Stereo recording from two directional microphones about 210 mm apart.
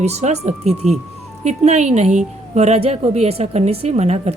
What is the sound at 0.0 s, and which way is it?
A woman's voice, 30° right (ahead or behind).